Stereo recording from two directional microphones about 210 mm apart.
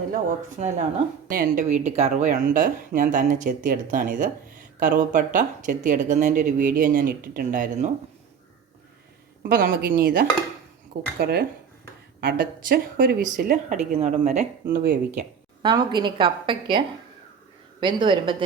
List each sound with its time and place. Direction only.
0.6 s speech: 35° right (ahead or behind)
9.4 s speech: 40° right (ahead or behind)
15.6 s a woman's voice: 20° right (ahead or behind)